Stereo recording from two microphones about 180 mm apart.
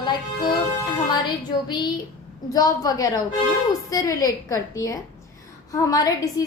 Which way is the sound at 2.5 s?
20° left (ahead or behind).